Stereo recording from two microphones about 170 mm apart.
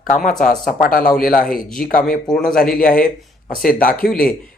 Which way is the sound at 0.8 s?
55° left (ahead or behind).